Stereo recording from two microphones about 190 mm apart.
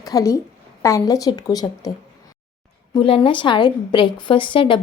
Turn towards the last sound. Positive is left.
turn(degrees=25)  # may be behind; listen again after turning